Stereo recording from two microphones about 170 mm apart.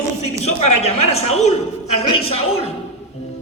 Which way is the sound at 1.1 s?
40° left (ahead or behind).